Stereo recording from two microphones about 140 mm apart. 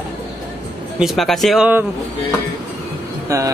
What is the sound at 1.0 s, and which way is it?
Speech, centre (ahead or behind).